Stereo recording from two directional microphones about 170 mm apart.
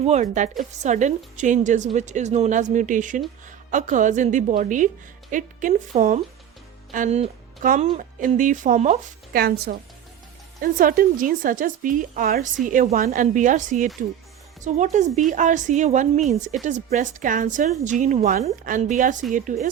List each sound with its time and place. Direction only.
0.0 s a woman's voice: 40° right (ahead or behind)